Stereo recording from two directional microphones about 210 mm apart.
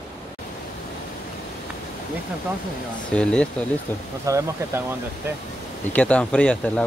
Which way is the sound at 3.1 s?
5° left (ahead or behind).